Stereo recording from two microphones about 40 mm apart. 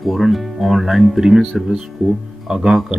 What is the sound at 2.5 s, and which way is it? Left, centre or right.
Speech, centre.